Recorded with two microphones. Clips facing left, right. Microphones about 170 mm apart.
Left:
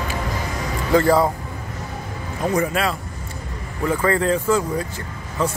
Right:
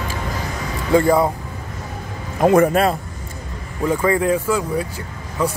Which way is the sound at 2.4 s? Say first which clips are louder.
Right 7 dB; 50° right (ahead or behind).